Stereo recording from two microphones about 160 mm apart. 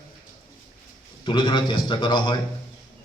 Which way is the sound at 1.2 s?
30° left (ahead or behind).